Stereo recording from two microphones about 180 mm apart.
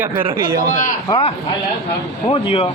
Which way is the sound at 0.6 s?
45° left (ahead or behind).